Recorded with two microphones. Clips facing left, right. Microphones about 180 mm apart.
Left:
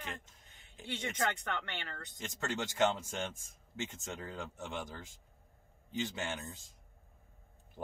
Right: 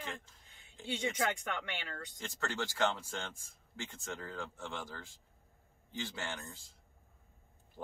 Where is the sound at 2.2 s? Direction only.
20° left (ahead or behind).